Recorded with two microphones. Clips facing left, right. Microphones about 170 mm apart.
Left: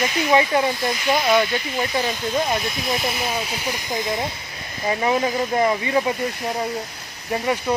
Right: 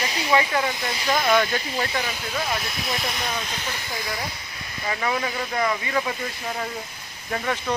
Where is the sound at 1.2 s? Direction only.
5° left (ahead or behind).